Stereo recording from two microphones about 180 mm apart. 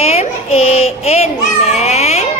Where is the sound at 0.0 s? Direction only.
35° left (ahead or behind).